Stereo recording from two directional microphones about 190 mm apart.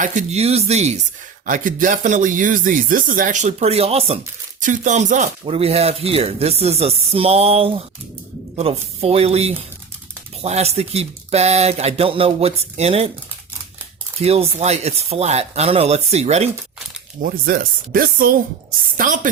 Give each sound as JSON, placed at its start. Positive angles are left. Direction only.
{"t": 0.0, "sound": "speech", "side_deg": -40}
{"t": 14.2, "sound": "speech", "side_deg": -35}
{"t": 17.2, "sound": "speech", "side_deg": -50}